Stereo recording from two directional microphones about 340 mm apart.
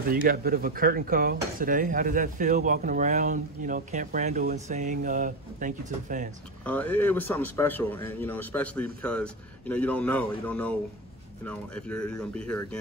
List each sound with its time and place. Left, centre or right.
0.1 s speech: right
6.6 s a man's voice: centre